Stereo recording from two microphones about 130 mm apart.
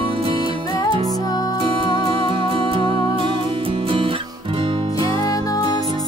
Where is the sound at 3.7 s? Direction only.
40° right (ahead or behind).